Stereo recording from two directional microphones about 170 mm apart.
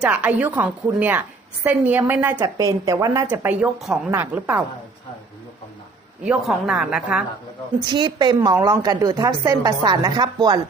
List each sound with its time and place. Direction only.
0.0 s a woman's voice: 10° right (ahead or behind)
6.2 s a woman's voice: centre (ahead or behind)
7.9 s speech: 25° right (ahead or behind)